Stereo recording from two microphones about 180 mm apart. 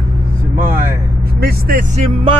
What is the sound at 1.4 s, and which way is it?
Speech, 55° right (ahead or behind).